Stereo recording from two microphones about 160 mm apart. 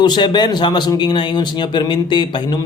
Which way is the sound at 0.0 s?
25° left (ahead or behind).